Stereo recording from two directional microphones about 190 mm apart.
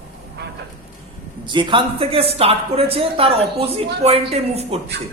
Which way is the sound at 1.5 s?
25° right (ahead or behind).